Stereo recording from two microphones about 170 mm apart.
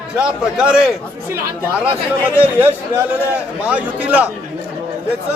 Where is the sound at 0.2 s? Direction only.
5° right (ahead or behind).